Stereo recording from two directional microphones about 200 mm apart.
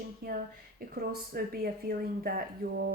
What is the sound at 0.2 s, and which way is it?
Speech, 50° right (ahead or behind).